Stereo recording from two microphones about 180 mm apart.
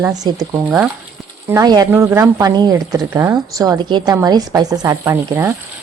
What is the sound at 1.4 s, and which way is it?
Speech, 20° right (ahead or behind).